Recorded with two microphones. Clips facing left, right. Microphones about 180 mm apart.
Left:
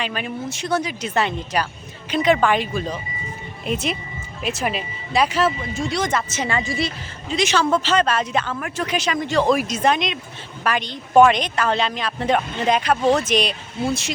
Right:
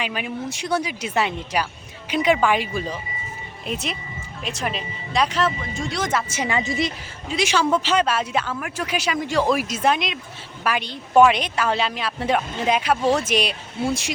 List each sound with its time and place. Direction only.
0.0 s a woman's voice: 10° right (ahead or behind)
7.3 s speech: 10° right (ahead or behind)